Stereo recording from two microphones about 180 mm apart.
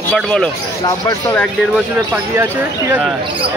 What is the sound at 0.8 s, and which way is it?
Speech, 15° left (ahead or behind).